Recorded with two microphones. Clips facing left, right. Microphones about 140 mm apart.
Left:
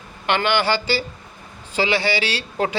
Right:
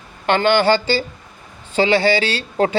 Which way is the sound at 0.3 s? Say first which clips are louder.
Right 5 dB; 35° right (ahead or behind).